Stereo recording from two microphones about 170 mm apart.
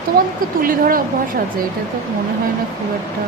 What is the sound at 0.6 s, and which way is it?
Speech, 55° right (ahead or behind).